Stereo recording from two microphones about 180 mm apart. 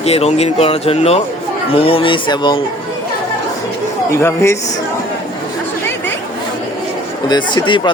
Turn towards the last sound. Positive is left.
turn(degrees=25)  # may be behind; listen again after turning